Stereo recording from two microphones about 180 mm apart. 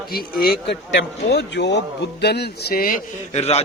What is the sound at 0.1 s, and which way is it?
A man's voice, 55° left (ahead or behind).